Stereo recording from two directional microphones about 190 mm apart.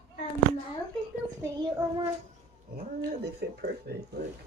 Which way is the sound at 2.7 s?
55° right (ahead or behind).